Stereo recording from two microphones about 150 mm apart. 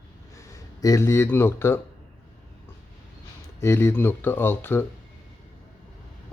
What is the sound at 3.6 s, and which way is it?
Speech, 15° left (ahead or behind).